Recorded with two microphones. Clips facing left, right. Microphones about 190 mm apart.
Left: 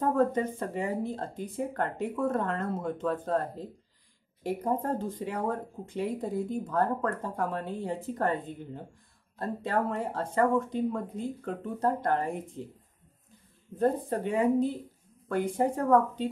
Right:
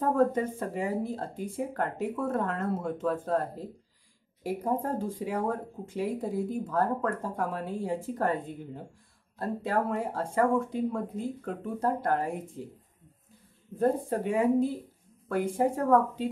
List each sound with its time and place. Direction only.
0.0 s speech: 5° right (ahead or behind)
13.7 s speech: 5° right (ahead or behind)